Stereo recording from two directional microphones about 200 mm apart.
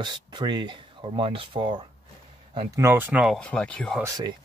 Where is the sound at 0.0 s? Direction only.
20° right (ahead or behind).